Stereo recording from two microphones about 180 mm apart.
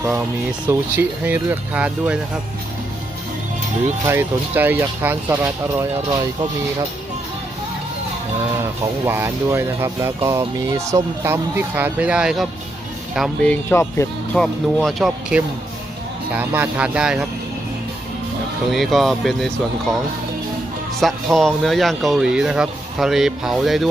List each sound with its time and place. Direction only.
0.0 s speech: 10° right (ahead or behind)
4.0 s speech: 10° right (ahead or behind)
6.1 s speech: 20° right (ahead or behind)
9.0 s speech: 15° right (ahead or behind); by 14.1 s 15° left (ahead or behind)
14.3 s speech: 5° left (ahead or behind)
18.7 s speech: centre (ahead or behind)
21.0 s speech: centre (ahead or behind)